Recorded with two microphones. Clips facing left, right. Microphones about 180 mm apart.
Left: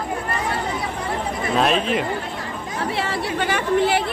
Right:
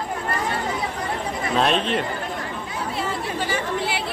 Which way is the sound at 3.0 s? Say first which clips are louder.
Left 1 dB; 70° left (ahead or behind).